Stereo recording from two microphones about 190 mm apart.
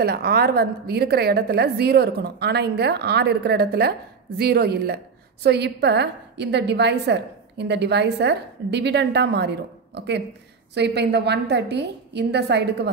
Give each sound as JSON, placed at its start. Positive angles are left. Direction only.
{"t": 0.0, "sound": "a woman's voice", "side_deg": -55}